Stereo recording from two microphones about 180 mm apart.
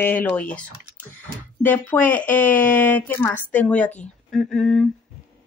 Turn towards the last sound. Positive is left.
turn(degrees=5)  # may be behind; listen again after turning